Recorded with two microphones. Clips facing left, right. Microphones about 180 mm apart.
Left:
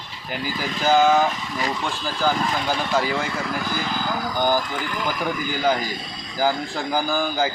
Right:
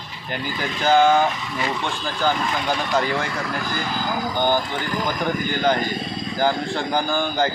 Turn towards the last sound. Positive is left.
turn(degrees=5)  # may be behind; listen again after turning